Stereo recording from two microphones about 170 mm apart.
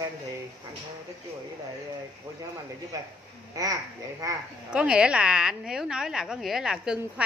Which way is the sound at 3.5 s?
20° right (ahead or behind).